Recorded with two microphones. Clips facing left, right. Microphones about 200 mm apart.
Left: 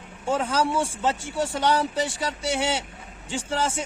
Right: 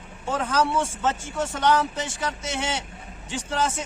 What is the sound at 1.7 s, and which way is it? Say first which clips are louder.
Speech: right 2 dB; 35° left (ahead or behind).